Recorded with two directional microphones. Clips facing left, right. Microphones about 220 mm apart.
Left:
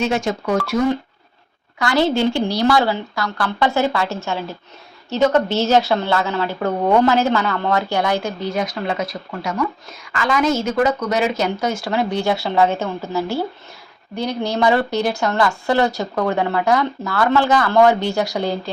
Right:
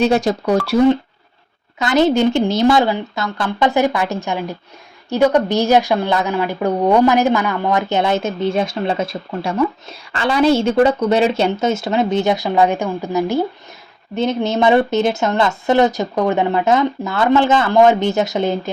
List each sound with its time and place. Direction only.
0.0 s speech: 35° right (ahead or behind)
1.8 s a woman's voice: 20° right (ahead or behind)